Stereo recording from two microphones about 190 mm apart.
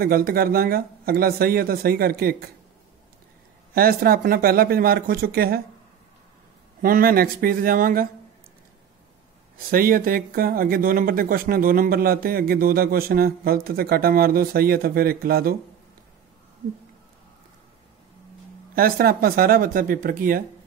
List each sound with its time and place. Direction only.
0.0 s speech: 50° right (ahead or behind)
3.7 s speech: 50° right (ahead or behind)
6.8 s speech: 50° right (ahead or behind)
9.7 s speech: 50° right (ahead or behind)
18.8 s speech: 50° right (ahead or behind)